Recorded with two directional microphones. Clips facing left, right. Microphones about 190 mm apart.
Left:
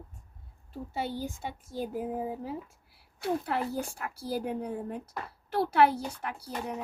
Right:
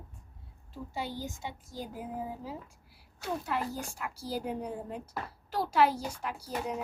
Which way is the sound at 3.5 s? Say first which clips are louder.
Left 3 dB; 55° left (ahead or behind).